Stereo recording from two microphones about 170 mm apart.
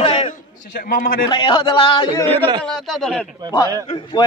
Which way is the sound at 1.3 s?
25° left (ahead or behind).